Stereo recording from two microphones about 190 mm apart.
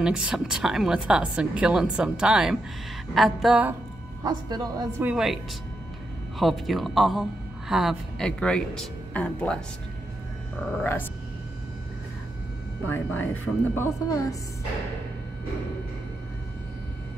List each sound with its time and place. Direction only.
0.0 s speech: 5° right (ahead or behind)
4.2 s a woman's voice: 20° right (ahead or behind)
5.0 s speech: 5° right (ahead or behind)
10.8 s speech: 10° left (ahead or behind)
12.8 s speech: 10° left (ahead or behind)